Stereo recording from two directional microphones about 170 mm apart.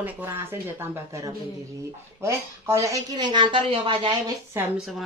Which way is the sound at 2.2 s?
15° right (ahead or behind).